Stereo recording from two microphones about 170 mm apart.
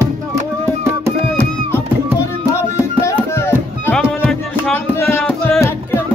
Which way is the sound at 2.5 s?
15° left (ahead or behind).